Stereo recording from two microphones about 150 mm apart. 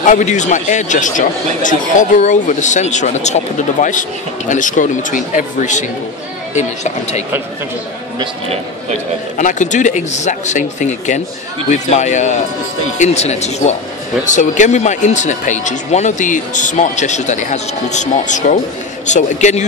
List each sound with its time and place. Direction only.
0.0 s speech: 55° left (ahead or behind)
9.4 s speech: 55° left (ahead or behind)